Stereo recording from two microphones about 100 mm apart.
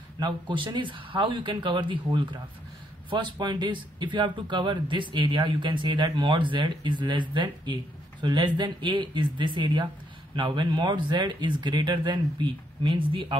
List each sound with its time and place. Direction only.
0.2 s speech: 50° right (ahead or behind)